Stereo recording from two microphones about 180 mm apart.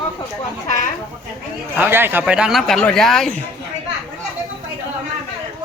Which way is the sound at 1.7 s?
10° right (ahead or behind).